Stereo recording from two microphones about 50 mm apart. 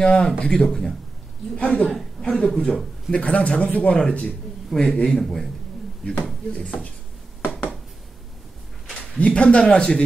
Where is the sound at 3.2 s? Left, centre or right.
Left.